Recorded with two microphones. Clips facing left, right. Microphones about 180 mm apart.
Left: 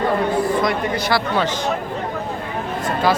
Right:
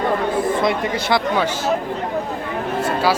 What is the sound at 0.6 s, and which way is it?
Speech, 25° right (ahead or behind).